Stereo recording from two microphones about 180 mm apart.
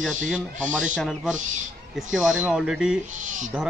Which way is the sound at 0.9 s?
Centre (ahead or behind).